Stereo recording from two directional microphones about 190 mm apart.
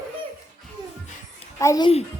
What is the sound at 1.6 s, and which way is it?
Speech, 20° left (ahead or behind).